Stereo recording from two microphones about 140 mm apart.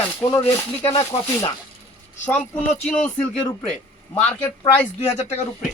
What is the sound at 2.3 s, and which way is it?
Speech, 10° left (ahead or behind).